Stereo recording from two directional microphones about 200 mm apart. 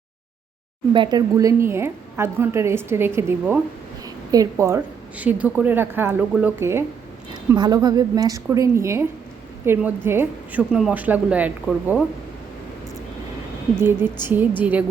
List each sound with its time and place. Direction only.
0.9 s a woman's voice: 20° right (ahead or behind)
13.8 s a woman's voice: 10° right (ahead or behind)